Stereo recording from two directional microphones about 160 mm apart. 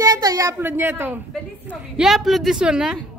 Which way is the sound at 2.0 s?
Centre (ahead or behind).